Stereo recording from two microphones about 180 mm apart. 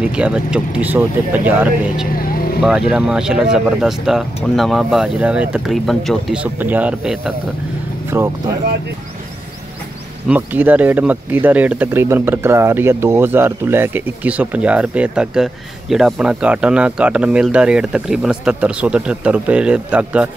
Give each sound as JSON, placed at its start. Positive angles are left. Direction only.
{"t": 0.0, "sound": "speech", "side_deg": -5}
{"t": 2.1, "sound": "vehicle", "side_deg": 55}
{"t": 2.6, "sound": "speech", "side_deg": -5}
{"t": 10.2, "sound": "speech", "side_deg": -10}